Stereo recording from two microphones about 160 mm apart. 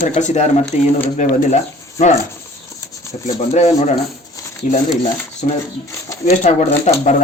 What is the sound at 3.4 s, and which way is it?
Speech, 45° left (ahead or behind).